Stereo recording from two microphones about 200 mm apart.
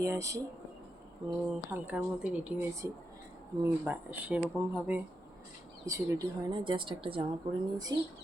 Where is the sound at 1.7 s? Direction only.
5° right (ahead or behind).